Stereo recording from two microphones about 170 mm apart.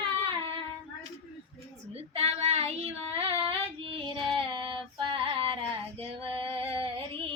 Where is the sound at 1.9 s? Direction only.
40° right (ahead or behind).